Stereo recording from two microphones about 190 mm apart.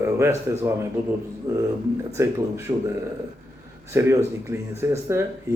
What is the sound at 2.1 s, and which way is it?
Speech, 15° right (ahead or behind).